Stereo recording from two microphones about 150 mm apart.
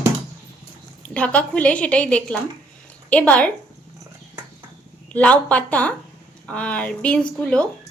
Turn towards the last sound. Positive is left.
turn(degrees=5)  # may be behind; listen again after turning